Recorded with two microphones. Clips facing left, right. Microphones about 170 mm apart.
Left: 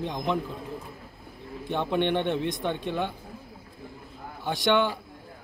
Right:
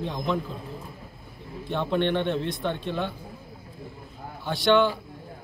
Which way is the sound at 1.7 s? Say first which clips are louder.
Right 1 dB; 15° left (ahead or behind).